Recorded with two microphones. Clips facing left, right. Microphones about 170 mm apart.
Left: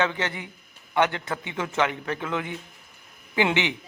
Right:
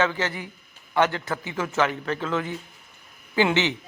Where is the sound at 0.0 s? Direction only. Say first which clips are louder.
Right 1 dB; 20° left (ahead or behind).